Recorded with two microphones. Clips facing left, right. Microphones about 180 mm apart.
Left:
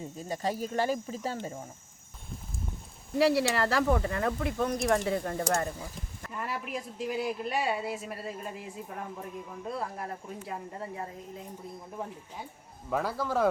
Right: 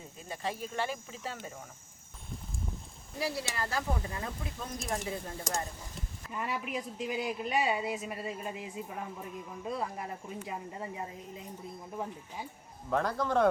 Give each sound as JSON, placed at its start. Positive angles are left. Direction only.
{"t": 0.2, "sound": "speech", "side_deg": 40}
{"t": 3.2, "sound": "speech", "side_deg": 75}
{"t": 6.3, "sound": "speech", "side_deg": 0}
{"t": 12.9, "sound": "speech", "side_deg": 5}